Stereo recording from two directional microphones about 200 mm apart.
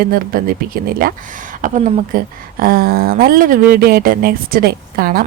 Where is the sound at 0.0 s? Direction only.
45° right (ahead or behind).